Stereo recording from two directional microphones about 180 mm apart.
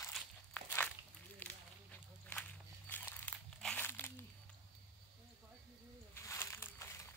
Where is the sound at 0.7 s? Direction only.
10° left (ahead or behind).